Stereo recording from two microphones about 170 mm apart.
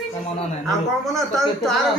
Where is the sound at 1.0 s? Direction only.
Centre (ahead or behind).